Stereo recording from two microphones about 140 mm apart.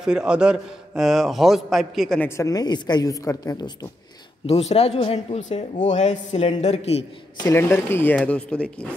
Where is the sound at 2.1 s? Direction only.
20° left (ahead or behind).